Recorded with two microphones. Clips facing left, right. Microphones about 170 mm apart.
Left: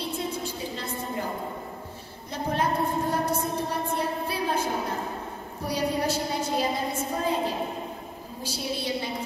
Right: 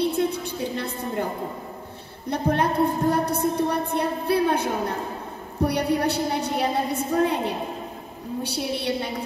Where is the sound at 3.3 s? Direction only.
65° right (ahead or behind).